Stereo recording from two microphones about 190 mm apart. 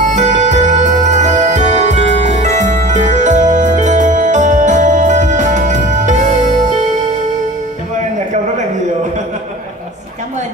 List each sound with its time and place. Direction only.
0.0 s music: 40° right (ahead or behind)